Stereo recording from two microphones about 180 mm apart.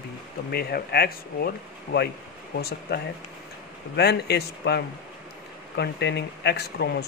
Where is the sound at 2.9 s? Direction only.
65° left (ahead or behind).